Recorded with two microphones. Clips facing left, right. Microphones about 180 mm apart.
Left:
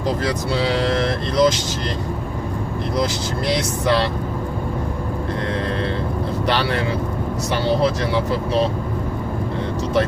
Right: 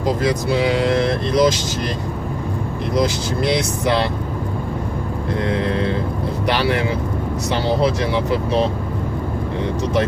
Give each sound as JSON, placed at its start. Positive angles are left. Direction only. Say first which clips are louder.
{"t": 0.2, "sound": "speech", "louder": "right 3 dB", "side_deg": -15}
{"t": 3.4, "sound": "speech", "louder": "right 1 dB", "side_deg": -20}
{"t": 5.5, "sound": "speech", "louder": "right 3 dB", "side_deg": -20}